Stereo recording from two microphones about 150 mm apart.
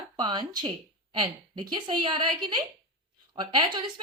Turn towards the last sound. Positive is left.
turn(degrees=-30)  # may be behind; listen again after turning